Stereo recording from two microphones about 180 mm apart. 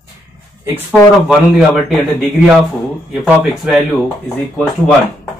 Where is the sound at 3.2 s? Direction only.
5° right (ahead or behind).